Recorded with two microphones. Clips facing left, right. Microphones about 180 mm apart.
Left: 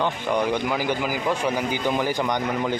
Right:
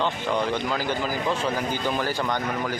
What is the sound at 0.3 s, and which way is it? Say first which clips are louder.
Speech: left 4 dB; 15° left (ahead or behind).